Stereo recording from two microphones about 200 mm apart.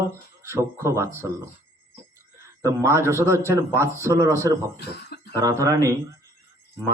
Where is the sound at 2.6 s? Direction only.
15° right (ahead or behind).